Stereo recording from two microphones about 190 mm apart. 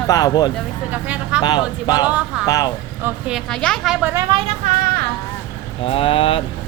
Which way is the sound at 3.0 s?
10° right (ahead or behind).